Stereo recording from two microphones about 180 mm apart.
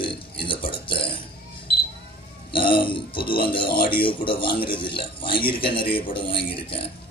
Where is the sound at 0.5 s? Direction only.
30° left (ahead or behind).